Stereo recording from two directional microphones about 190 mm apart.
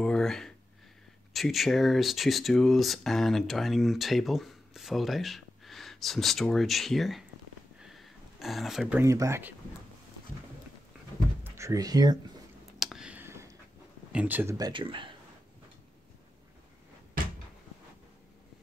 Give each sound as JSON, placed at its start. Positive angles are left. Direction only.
{"t": 0.0, "sound": "speech", "side_deg": 5}
{"t": 7.8, "sound": "a sound", "side_deg": 0}
{"t": 9.0, "sound": "speech", "side_deg": -15}
{"t": 11.4, "sound": "speech", "side_deg": -15}
{"t": 12.7, "sound": "a sound", "side_deg": 0}
{"t": 14.1, "sound": "speech", "side_deg": -10}
{"t": 14.7, "sound": "speech", "side_deg": -25}